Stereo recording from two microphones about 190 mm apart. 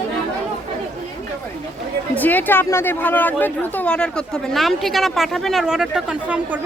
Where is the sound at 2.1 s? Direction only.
10° left (ahead or behind).